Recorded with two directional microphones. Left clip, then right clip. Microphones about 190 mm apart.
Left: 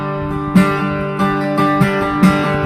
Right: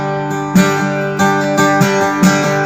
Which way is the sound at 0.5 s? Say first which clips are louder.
Right 2 dB; 30° right (ahead or behind).